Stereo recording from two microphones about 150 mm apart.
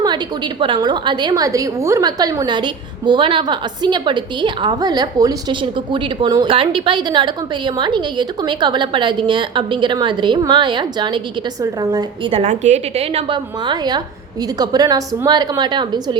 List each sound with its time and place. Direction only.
0.0 s a woman's voice: 30° right (ahead or behind)
12.4 s a woman's voice: 50° right (ahead or behind); by 16.1 s 30° right (ahead or behind)